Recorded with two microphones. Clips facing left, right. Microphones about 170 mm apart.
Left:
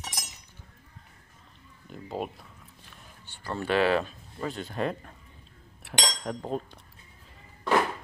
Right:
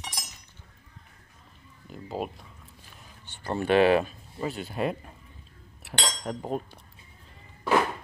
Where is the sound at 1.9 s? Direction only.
Centre (ahead or behind).